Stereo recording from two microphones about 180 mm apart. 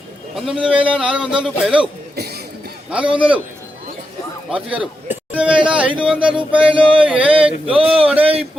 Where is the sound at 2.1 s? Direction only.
60° right (ahead or behind).